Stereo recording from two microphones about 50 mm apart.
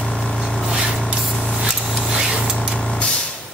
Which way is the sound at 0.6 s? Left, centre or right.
Centre.